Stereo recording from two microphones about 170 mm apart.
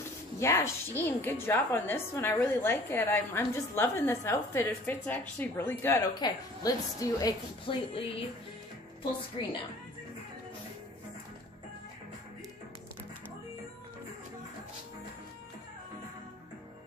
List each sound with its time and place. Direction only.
0.4 s a woman's voice: 15° left (ahead or behind)
7.7 s speech: 30° left (ahead or behind)
9.4 s speech: 35° left (ahead or behind)